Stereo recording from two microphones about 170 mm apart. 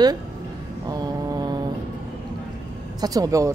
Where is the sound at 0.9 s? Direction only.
20° right (ahead or behind).